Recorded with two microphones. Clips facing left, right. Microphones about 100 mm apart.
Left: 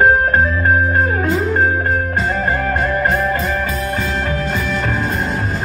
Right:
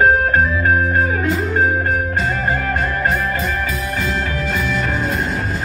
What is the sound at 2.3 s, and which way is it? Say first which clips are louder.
Music: left 1 dB; 35° left (ahead or behind).